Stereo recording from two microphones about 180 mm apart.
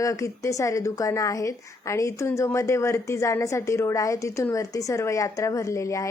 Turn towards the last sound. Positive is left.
turn(degrees=15)  # may be behind; listen again after turning